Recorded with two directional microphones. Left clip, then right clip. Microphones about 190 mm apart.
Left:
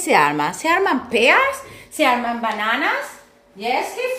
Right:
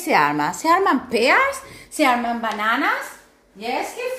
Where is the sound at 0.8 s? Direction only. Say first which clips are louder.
Left 2 dB; 20° right (ahead or behind).